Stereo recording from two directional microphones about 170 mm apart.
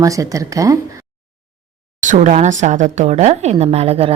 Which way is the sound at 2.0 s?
45° right (ahead or behind).